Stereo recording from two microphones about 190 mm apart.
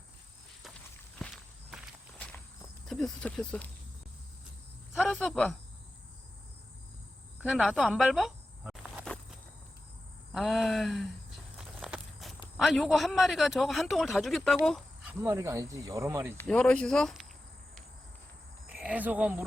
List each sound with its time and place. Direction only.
1.2 s walk: centre (ahead or behind)
4.9 s a man's voice: centre (ahead or behind)
7.4 s snake: 5° right (ahead or behind)
10.3 s a man's voice: centre (ahead or behind)
11.5 s walk: 5° right (ahead or behind)
12.5 s a man's voice: centre (ahead or behind)
15.2 s speech: 10° right (ahead or behind)
16.4 s a man's voice: 5° left (ahead or behind)
18.8 s speech: 10° right (ahead or behind)